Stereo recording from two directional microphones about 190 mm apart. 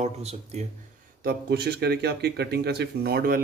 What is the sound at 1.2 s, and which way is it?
Speech, 60° right (ahead or behind).